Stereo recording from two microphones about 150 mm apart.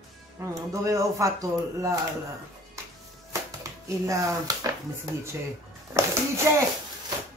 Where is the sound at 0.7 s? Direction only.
20° right (ahead or behind).